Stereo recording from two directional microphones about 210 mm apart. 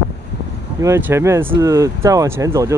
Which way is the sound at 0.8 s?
10° right (ahead or behind).